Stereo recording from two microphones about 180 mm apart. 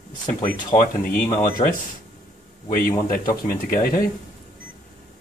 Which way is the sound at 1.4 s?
55° left (ahead or behind).